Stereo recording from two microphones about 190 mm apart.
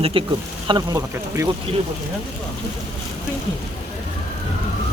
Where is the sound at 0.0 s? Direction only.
30° right (ahead or behind).